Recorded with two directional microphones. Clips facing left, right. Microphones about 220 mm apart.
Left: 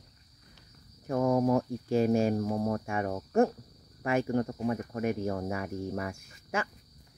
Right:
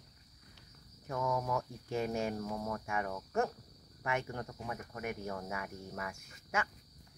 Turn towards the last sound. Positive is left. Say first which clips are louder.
# left 4 dB
turn(degrees=30)  # may be behind; listen again after turning